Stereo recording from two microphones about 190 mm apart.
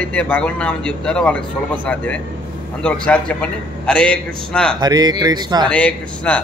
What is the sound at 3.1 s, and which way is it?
Speech, 5° left (ahead or behind).